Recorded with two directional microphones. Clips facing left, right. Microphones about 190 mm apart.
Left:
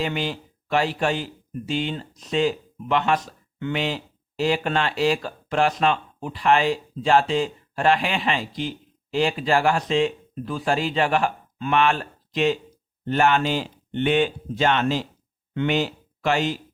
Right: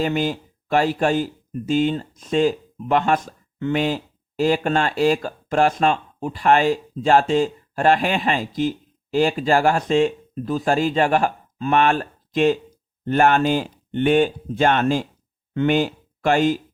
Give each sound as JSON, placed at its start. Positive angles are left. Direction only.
{"t": 0.0, "sound": "speech", "side_deg": -45}